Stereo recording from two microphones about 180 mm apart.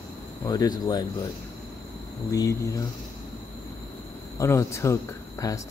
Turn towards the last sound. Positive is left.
turn(degrees=20)  # may be behind; listen again after turning